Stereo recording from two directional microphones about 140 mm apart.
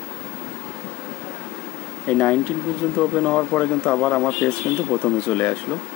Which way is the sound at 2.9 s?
15° left (ahead or behind).